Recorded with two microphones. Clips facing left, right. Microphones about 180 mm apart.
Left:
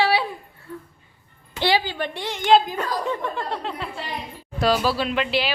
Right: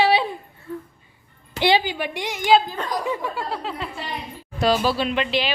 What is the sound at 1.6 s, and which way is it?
A woman's voice, 15° right (ahead or behind).